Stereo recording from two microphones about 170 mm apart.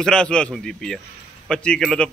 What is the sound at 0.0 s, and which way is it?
A man's voice, 5° left (ahead or behind).